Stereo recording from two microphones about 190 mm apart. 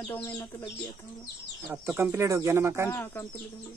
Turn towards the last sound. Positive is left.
turn(degrees=15)  # may be behind; listen again after turning